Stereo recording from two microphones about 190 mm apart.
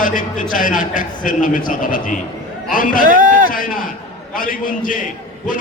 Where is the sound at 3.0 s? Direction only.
45° right (ahead or behind).